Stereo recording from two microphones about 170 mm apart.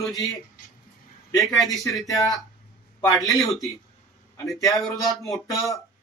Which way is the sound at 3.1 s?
Centre (ahead or behind).